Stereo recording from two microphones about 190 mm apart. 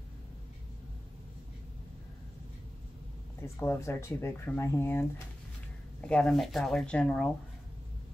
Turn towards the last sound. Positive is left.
turn(degrees=5)  # may be behind; listen again after turning